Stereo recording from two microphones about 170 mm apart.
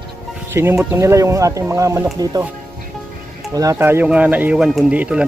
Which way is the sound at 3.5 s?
20° right (ahead or behind).